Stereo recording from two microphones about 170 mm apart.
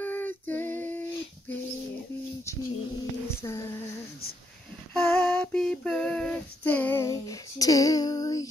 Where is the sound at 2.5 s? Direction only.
15° left (ahead or behind).